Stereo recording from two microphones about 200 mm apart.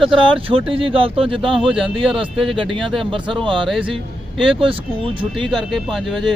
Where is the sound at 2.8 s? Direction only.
Centre (ahead or behind).